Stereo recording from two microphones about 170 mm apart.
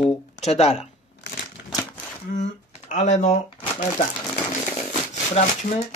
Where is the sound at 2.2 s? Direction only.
45° left (ahead or behind).